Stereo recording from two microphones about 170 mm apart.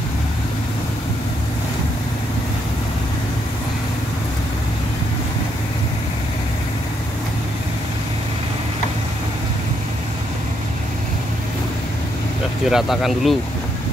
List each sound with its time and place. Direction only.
12.6 s speech: centre (ahead or behind)